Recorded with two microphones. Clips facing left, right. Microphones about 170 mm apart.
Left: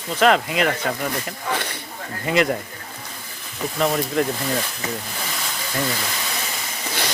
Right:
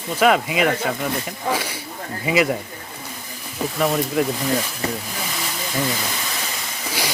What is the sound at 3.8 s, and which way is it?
Speech, centre (ahead or behind).